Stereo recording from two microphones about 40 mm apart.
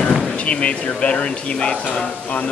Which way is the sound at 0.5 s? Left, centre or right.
Left.